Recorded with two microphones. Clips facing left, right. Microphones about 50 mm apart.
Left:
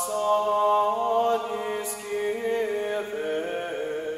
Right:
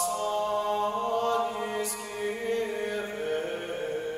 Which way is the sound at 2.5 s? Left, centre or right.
Centre.